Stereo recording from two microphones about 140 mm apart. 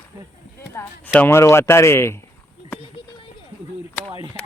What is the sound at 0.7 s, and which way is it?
Speech, 15° left (ahead or behind).